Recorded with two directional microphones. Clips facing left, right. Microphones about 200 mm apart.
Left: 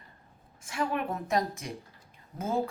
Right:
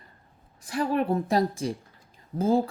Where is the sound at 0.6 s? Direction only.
35° right (ahead or behind).